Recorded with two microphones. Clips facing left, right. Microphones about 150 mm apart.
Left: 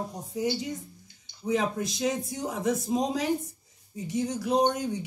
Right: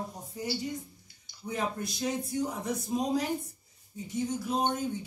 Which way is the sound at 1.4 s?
90° left.